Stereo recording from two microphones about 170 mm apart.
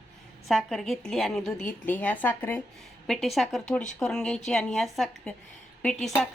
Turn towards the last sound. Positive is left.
turn(degrees=5)  # may be behind; listen again after turning